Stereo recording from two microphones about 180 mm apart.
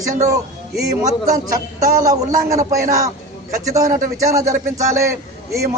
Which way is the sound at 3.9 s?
45° right (ahead or behind).